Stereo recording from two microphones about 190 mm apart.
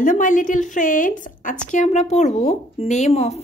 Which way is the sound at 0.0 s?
45° left (ahead or behind).